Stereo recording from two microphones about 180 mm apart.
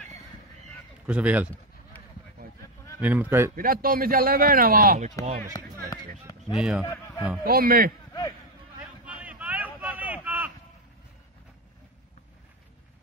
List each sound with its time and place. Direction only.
1.0 s speech: 10° right (ahead or behind)
3.0 s speech: 10° right (ahead or behind)
3.5 s a man's voice: 50° right (ahead or behind)
5.2 s speech: 20° left (ahead or behind)
5.5 s music: 20° left (ahead or behind)
6.4 s speech: 5° right (ahead or behind)
6.8 s speech: 10° left (ahead or behind)
7.4 s a man's voice: 55° right (ahead or behind)
9.0 s a sound: 10° right (ahead or behind)